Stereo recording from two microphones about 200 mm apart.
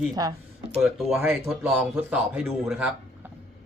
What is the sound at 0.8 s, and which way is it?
A man's voice, centre (ahead or behind).